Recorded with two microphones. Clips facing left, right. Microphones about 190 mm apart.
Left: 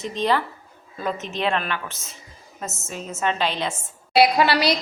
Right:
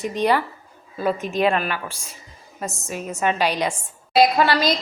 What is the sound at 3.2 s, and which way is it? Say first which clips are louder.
Speech: right 3 dB; 10° right (ahead or behind).